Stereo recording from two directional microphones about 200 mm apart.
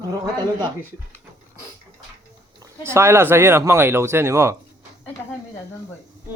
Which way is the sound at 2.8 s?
15° right (ahead or behind).